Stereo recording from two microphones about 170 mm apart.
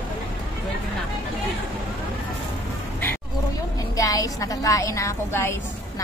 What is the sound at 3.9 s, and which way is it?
A woman's voice, 20° left (ahead or behind).